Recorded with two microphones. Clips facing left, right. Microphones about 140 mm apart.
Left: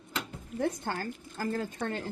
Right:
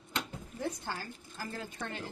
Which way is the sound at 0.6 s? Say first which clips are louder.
Left 6 dB; 55° left (ahead or behind).